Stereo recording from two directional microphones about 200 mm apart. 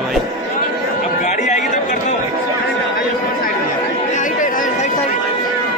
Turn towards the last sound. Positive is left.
turn(degrees=35)  # may be behind; listen again after turning